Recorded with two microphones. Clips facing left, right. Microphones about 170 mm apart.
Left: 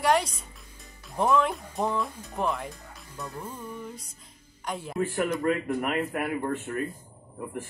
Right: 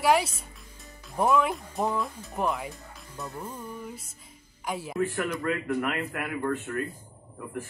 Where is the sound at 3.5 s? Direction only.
10° right (ahead or behind).